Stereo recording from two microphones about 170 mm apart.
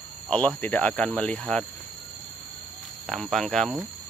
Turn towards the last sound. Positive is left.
turn(degrees=0)  # may be behind; listen again after turning